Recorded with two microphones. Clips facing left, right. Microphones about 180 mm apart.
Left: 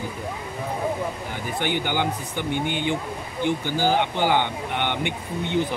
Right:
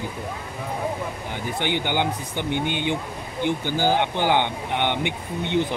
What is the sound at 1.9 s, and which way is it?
Speech, 20° right (ahead or behind).